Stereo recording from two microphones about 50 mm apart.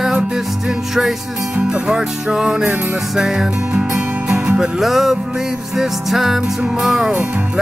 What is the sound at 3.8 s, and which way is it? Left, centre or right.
Music, right.